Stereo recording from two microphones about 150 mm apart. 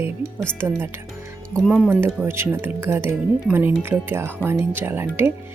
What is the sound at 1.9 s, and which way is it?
Speech, 15° right (ahead or behind).